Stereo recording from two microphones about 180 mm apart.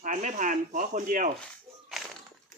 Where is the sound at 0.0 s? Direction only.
45° right (ahead or behind).